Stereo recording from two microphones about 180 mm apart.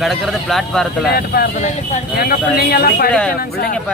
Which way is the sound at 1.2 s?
60° left (ahead or behind).